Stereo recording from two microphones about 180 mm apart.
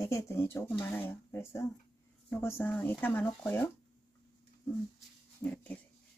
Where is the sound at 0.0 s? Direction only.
15° left (ahead or behind).